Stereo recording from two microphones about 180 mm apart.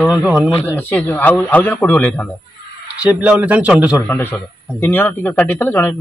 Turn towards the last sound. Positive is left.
turn(degrees=10)  # may be behind; listen again after turning